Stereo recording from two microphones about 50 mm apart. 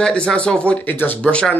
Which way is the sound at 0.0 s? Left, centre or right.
Centre.